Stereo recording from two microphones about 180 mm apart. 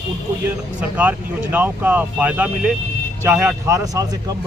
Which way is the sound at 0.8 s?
10° right (ahead or behind).